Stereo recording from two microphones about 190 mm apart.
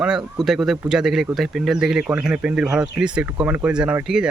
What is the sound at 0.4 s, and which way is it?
Speech, centre (ahead or behind).